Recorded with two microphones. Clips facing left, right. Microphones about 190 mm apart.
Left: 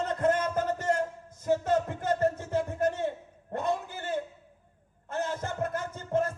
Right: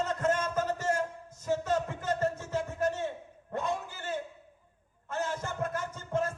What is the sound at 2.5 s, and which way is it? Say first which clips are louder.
Music: left 3 dB; 55° left (ahead or behind).